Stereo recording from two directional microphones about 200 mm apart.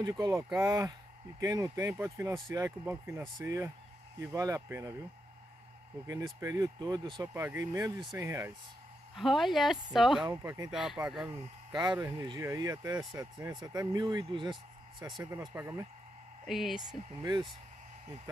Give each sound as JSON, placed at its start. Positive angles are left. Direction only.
{"t": 0.0, "sound": "speech", "side_deg": -20}
{"t": 6.0, "sound": "speech", "side_deg": -20}
{"t": 9.1, "sound": "speech", "side_deg": 0}
{"t": 10.3, "sound": "speech", "side_deg": -15}
{"t": 10.7, "sound": "speech", "side_deg": 0}
{"t": 11.7, "sound": "speech", "side_deg": -20}
{"t": 16.4, "sound": "speech", "side_deg": 0}
{"t": 17.1, "sound": "speech", "side_deg": -20}